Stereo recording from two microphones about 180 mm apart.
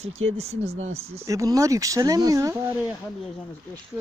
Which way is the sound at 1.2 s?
20° right (ahead or behind).